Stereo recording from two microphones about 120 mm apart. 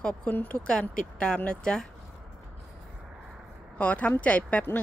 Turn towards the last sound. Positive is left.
turn(degrees=10)  # may be behind; listen again after turning